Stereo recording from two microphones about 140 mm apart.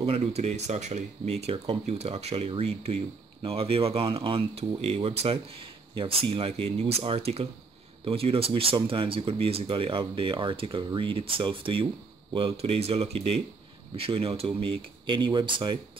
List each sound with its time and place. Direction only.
0.0 s speech: 45° right (ahead or behind)